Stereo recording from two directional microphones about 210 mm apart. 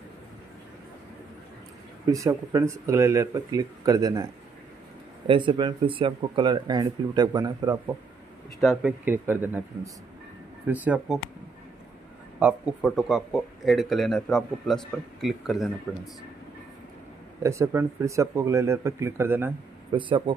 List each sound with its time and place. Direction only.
2.0 s speech: 15° right (ahead or behind)
8.5 s speech: centre (ahead or behind)
10.7 s speech: 5° right (ahead or behind)
12.4 s speech: 5° right (ahead or behind)
17.4 s speech: 15° right (ahead or behind)
19.9 s speech: 25° right (ahead or behind)